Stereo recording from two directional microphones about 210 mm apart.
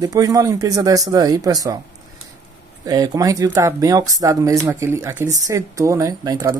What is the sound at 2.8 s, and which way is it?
Speech, 15° right (ahead or behind).